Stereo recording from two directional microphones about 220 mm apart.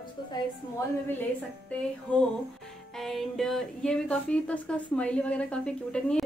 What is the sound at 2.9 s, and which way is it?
Speech, centre (ahead or behind).